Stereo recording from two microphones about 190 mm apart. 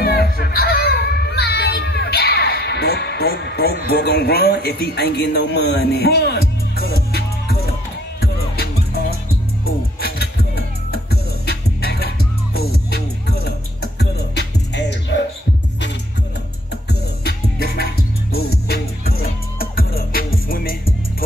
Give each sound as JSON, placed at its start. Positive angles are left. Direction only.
{"t": 0.0, "sound": "music", "side_deg": 55}
{"t": 17.2, "sound": "music", "side_deg": 55}